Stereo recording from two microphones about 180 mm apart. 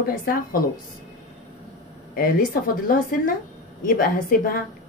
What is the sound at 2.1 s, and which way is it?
A woman's voice, 50° left (ahead or behind).